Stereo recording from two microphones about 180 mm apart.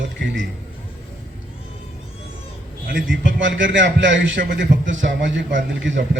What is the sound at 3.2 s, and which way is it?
A man's voice, 90° right.